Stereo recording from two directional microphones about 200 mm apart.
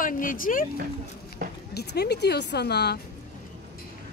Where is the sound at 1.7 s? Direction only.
55° left (ahead or behind).